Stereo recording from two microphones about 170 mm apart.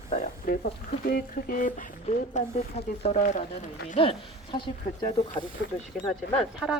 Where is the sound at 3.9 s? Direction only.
30° left (ahead or behind).